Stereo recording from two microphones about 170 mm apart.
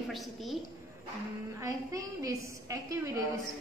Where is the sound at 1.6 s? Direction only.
20° right (ahead or behind).